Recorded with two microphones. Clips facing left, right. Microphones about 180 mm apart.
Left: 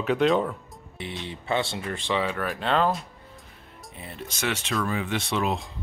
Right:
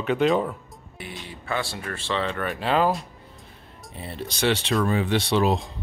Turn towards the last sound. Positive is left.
turn(degrees=-35)  # may be behind; listen again after turning